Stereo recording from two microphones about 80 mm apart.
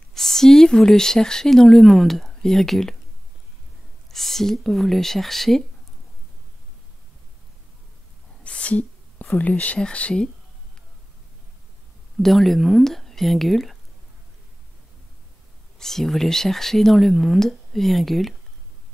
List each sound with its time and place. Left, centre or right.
0.1 s speech: centre
4.1 s speech: centre
8.5 s a sound: centre
9.4 s speech: centre
12.2 s speech: centre
15.8 s speech: centre